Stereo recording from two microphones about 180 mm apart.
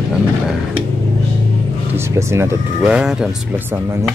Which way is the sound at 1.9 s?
15° right (ahead or behind).